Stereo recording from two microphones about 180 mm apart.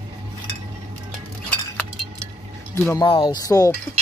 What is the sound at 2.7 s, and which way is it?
Speech, 15° left (ahead or behind).